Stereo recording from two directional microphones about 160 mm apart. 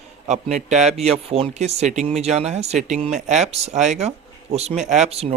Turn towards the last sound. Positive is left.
turn(degrees=-40)  # may be behind; listen again after turning